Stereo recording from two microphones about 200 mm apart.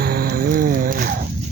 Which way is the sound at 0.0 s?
50° right (ahead or behind).